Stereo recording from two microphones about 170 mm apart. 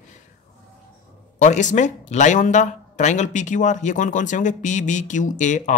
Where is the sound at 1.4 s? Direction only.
45° left (ahead or behind).